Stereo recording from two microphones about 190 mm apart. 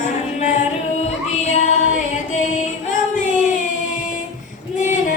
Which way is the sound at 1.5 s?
40° left (ahead or behind).